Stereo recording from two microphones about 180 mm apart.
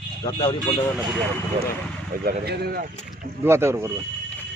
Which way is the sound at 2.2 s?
60° right (ahead or behind).